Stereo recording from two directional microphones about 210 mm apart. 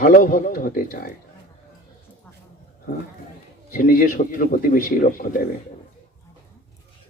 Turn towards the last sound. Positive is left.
turn(degrees=45)  # may be behind; listen again after turning